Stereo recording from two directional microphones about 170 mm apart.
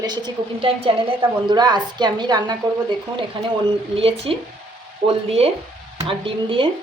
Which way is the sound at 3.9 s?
35° right (ahead or behind).